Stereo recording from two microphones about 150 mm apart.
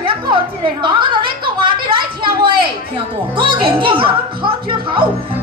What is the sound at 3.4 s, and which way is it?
A woman's voice, 35° right (ahead or behind).